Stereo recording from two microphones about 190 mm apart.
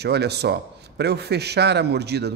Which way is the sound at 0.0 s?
60° right (ahead or behind).